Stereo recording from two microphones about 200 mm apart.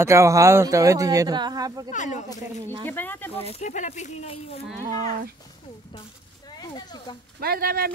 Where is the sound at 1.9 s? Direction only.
40° left (ahead or behind).